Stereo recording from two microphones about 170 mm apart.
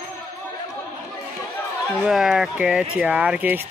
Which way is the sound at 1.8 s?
Centre (ahead or behind).